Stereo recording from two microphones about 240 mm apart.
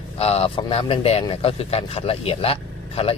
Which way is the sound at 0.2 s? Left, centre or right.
Left.